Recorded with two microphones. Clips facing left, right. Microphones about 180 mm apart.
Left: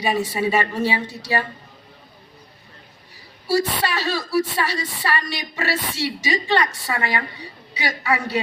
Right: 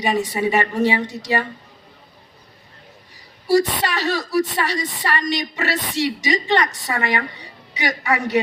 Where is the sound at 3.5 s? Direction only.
15° right (ahead or behind).